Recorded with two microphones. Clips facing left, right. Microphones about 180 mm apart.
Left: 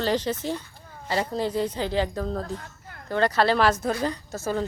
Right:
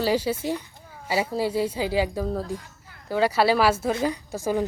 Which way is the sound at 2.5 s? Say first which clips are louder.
Even; 55° left (ahead or behind).